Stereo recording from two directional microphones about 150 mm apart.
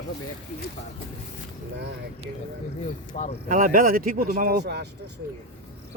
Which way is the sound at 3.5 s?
70° right (ahead or behind).